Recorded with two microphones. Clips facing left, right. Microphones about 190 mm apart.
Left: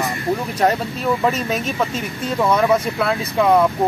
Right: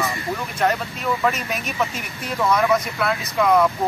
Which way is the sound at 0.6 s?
30° left (ahead or behind).